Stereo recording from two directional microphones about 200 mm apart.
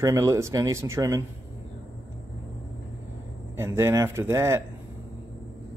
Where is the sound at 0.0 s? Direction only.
15° right (ahead or behind).